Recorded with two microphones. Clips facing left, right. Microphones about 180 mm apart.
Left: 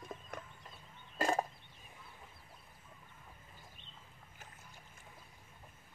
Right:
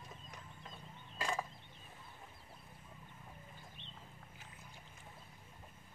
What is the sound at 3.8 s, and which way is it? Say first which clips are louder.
Boat: right 4 dB; 10° left (ahead or behind).